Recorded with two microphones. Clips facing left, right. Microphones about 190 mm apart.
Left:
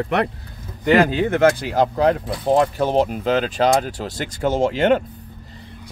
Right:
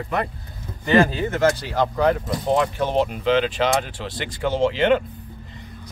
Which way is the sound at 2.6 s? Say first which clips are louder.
Left 5 dB; 40° left (ahead or behind).